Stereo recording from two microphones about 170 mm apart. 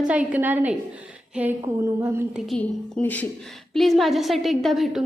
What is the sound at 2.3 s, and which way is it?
A woman's voice, centre (ahead or behind).